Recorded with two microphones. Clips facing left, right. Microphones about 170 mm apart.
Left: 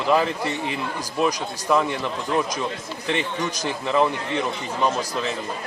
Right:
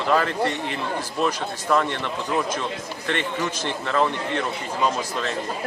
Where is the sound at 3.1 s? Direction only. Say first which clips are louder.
Left 1 dB; 10° left (ahead or behind).